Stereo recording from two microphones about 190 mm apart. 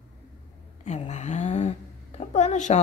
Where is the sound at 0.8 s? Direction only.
35° left (ahead or behind).